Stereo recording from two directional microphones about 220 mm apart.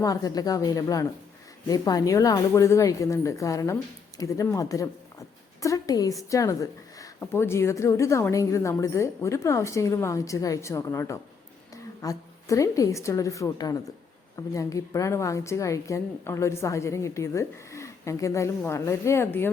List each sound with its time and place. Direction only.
0.0 s a woman's voice: 15° left (ahead or behind)